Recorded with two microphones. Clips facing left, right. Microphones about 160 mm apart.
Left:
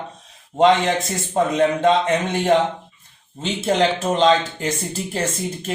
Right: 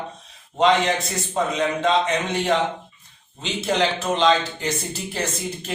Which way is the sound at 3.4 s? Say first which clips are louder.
Left 3 dB; 50° left (ahead or behind).